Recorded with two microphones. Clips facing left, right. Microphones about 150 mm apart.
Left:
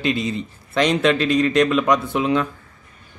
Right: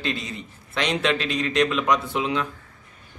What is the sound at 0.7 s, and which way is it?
A man's voice, 45° left (ahead or behind).